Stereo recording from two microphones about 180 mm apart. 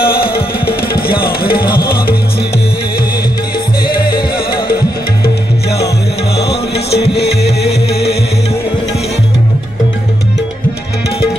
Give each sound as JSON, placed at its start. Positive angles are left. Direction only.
{"t": 0.0, "sound": "music", "side_deg": 55}
{"t": 3.8, "sound": "music", "side_deg": 55}
{"t": 6.9, "sound": "music", "side_deg": 65}